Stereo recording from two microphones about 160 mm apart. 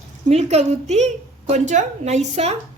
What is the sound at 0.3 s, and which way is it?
A woman's voice, 45° right (ahead or behind).